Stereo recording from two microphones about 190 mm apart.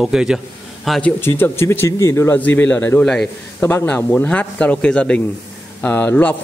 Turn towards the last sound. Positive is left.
turn(degrees=10)  # may be behind; listen again after turning